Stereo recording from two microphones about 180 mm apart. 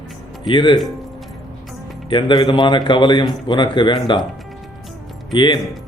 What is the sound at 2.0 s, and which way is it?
A man's voice, 25° left (ahead or behind).